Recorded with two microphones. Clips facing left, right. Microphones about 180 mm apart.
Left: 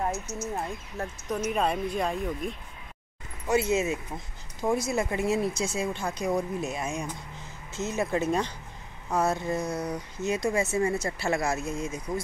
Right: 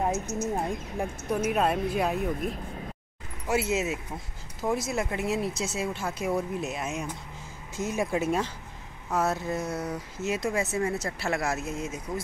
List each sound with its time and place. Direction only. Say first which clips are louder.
0.0 s speech: right 3 dB; 15° right (ahead or behind)